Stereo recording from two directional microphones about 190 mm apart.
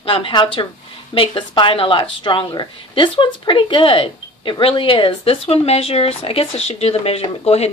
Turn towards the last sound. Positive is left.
turn(degrees=35)  # may be behind; listen again after turning